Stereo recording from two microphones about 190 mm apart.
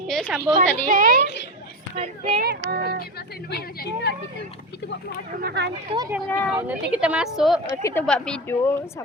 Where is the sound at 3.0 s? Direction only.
55° left (ahead or behind).